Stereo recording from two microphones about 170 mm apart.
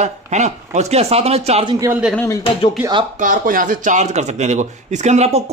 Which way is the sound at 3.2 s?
50° right (ahead or behind).